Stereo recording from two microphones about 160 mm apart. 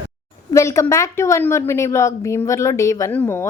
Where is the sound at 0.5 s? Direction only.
15° left (ahead or behind).